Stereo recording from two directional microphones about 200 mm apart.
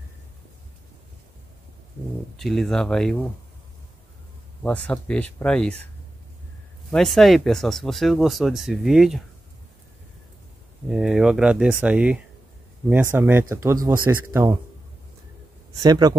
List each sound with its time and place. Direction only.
2.3 s speech: centre (ahead or behind)
4.6 s speech: 5° left (ahead or behind)
6.9 s speech: centre (ahead or behind)
10.9 s speech: centre (ahead or behind)
15.7 s speech: 20° right (ahead or behind)